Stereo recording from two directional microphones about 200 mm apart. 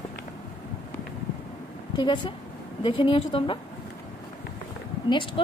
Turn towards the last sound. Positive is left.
turn(degrees=25)  # may be behind; listen again after turning